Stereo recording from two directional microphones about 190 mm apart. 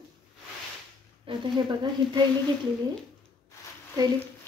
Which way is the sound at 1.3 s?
30° right (ahead or behind).